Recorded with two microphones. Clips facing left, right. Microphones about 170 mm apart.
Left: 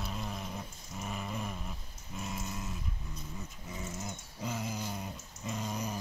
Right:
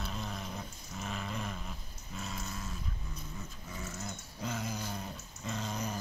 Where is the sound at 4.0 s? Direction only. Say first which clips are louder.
Even; 10° left (ahead or behind).